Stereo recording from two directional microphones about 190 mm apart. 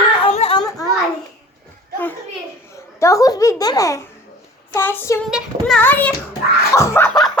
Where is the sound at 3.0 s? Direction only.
15° left (ahead or behind).